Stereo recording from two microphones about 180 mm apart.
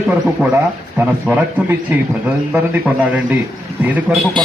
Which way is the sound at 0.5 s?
10° right (ahead or behind).